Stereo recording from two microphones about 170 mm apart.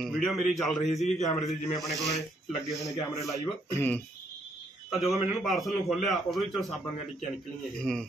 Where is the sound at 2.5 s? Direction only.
Centre (ahead or behind).